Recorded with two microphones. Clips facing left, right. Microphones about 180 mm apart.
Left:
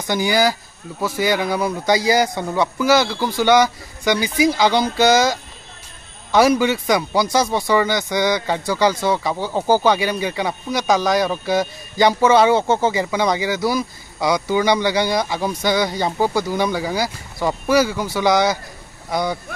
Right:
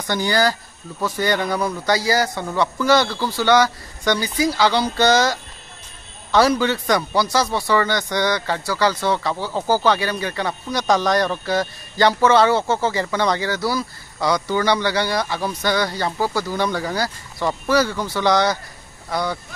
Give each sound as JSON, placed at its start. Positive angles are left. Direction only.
{"t": 0.0, "sound": "a man's voice", "side_deg": 10}